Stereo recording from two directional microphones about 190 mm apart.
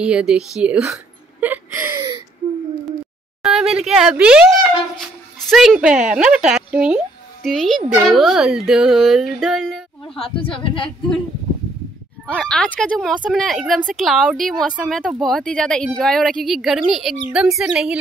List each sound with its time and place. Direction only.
0.0 s speech: 5° right (ahead or behind)
0.6 s a sound: 5° right (ahead or behind)
3.4 s speech: 5° right (ahead or behind)
10.1 s speech: 30° left (ahead or behind)
12.3 s speech: 5° left (ahead or behind)